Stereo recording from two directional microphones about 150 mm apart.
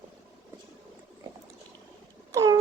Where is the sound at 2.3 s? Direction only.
20° right (ahead or behind).